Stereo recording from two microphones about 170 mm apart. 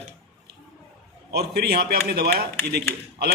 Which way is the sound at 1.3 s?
70° right (ahead or behind).